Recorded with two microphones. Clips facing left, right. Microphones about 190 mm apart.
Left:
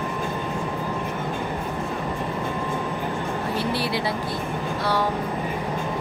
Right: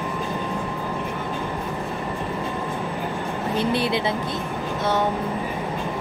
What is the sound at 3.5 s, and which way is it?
Speech, 20° right (ahead or behind).